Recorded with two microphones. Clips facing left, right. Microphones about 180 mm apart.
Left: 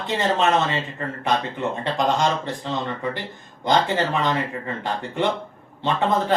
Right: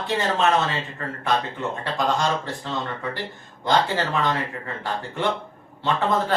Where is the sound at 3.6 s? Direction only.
20° left (ahead or behind).